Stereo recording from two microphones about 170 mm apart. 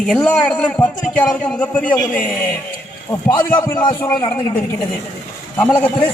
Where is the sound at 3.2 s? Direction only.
15° left (ahead or behind).